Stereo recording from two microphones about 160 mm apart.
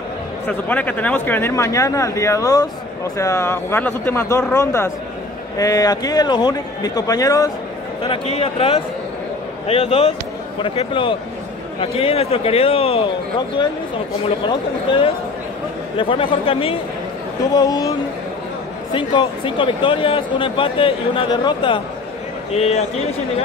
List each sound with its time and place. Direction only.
0.5 s a man's voice: 10° left (ahead or behind)
8.0 s speech: 35° left (ahead or behind)
16.0 s speech: 35° left (ahead or behind)
17.6 s a man's voice: 25° left (ahead or behind)
18.9 s speech: 30° left (ahead or behind)
22.5 s speech: 40° left (ahead or behind)